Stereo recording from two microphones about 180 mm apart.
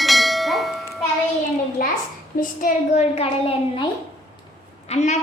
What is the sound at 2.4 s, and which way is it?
A woman's voice, 45° left (ahead or behind).